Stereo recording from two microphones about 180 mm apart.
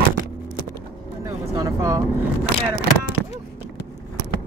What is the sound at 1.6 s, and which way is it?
Speech, 20° right (ahead or behind).